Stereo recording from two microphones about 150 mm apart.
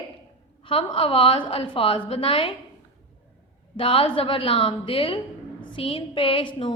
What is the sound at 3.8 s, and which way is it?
A woman's voice, 40° left (ahead or behind).